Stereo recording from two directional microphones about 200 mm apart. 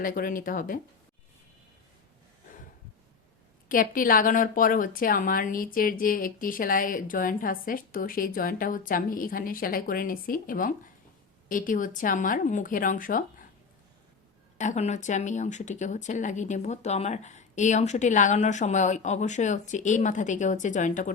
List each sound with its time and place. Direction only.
0.0 s a woman's voice: 45° left (ahead or behind)
3.7 s a woman's voice: 45° left (ahead or behind)
14.6 s speech: 35° left (ahead or behind)